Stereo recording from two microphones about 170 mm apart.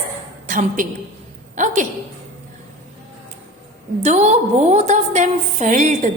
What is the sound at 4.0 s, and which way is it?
A woman's voice, 40° right (ahead or behind).